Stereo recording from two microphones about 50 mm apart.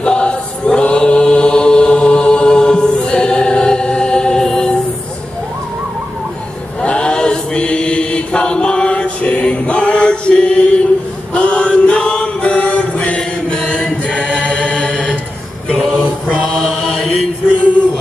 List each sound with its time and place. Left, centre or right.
0.0 s choir: centre
6.8 s chant: left
16.5 s mantra: centre